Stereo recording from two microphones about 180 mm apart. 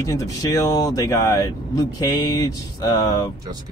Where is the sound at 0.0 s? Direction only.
20° left (ahead or behind).